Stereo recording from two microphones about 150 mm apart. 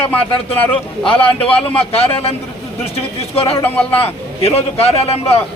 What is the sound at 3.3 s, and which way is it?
Speech, 40° left (ahead or behind).